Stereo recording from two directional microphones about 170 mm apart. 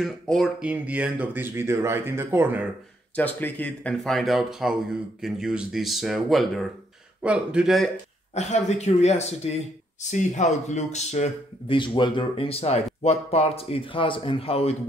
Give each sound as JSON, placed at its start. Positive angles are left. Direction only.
{"t": 0.0, "sound": "speech", "side_deg": 0}
{"t": 3.2, "sound": "speech", "side_deg": 10}
{"t": 8.4, "sound": "speech", "side_deg": 40}